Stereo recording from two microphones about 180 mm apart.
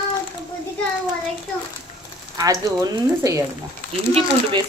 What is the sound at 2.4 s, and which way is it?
Speech, 20° right (ahead or behind).